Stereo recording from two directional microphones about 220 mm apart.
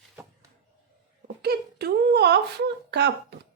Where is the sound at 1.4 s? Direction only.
45° right (ahead or behind).